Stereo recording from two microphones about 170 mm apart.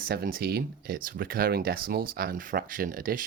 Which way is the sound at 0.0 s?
60° right (ahead or behind).